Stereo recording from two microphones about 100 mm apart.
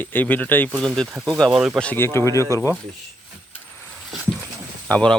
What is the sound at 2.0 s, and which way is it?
Speech, 25° left (ahead or behind).